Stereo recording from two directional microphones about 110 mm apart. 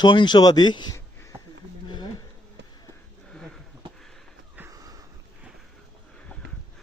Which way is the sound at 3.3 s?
5° left (ahead or behind).